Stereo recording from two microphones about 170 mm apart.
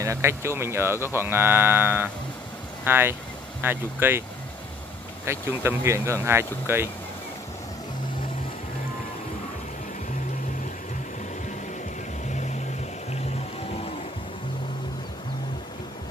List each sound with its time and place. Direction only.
0.0 s speech: 15° right (ahead or behind)
5.2 s speech: 15° right (ahead or behind)
12.3 s music: 45° left (ahead or behind)